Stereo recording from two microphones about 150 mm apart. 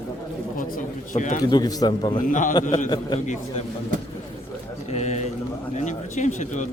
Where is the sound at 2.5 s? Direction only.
25° left (ahead or behind).